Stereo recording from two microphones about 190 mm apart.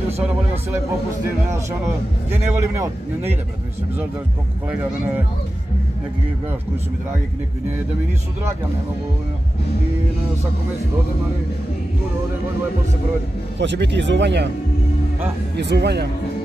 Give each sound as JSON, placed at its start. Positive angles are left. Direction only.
{"t": 2.3, "sound": "a man's voice", "side_deg": -15}
{"t": 4.6, "sound": "a man's voice", "side_deg": -10}
{"t": 13.6, "sound": "speech", "side_deg": -65}
{"t": 15.5, "sound": "speech", "side_deg": -65}